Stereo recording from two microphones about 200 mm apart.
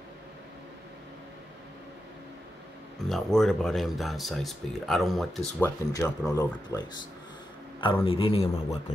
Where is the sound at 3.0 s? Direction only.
Centre (ahead or behind).